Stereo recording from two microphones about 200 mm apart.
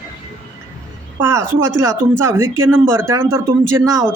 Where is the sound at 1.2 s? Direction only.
10° right (ahead or behind).